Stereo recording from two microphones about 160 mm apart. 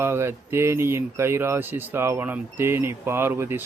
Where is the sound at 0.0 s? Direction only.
15° right (ahead or behind).